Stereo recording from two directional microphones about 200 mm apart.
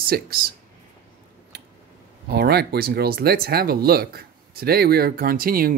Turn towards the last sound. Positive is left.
turn(degrees=-45)  # may be behind; listen again after turning